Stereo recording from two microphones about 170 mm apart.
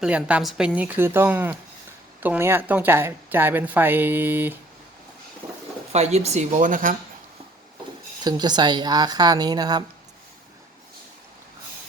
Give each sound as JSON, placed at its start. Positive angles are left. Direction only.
{"t": 0.0, "sound": "a woman's voice", "side_deg": -5}
{"t": 5.9, "sound": "speech", "side_deg": -40}
{"t": 8.2, "sound": "speech", "side_deg": -25}